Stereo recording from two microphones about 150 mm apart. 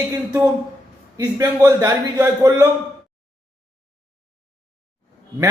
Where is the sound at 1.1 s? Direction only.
25° right (ahead or behind).